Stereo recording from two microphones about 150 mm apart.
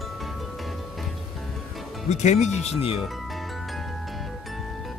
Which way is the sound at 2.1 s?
50° left (ahead or behind).